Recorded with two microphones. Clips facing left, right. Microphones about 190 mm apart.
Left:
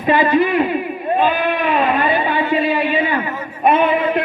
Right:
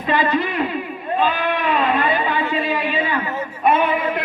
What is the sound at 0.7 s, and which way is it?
Speech, 20° left (ahead or behind).